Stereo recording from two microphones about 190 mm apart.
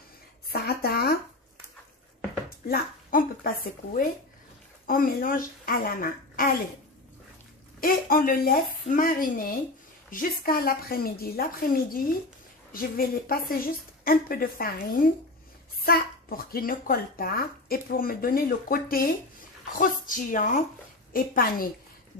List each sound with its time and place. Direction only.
0.5 s a sound: 55° left (ahead or behind)
2.7 s a child's voice: 50° left (ahead or behind)
7.8 s a child's voice: 50° left (ahead or behind)